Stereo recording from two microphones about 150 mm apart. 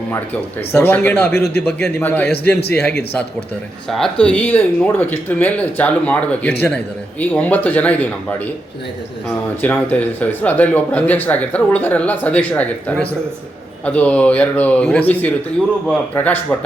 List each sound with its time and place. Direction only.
0.7 s speech: 15° left (ahead or behind)
1.3 s speech: 90° left
1.6 s speech: 10° left (ahead or behind)
2.2 s speech: 90° left
3.8 s speech: 5° left (ahead or behind)
9.8 s speech: 10° left (ahead or behind)